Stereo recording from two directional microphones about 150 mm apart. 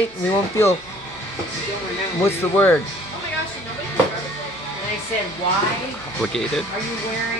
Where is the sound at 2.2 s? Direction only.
15° left (ahead or behind).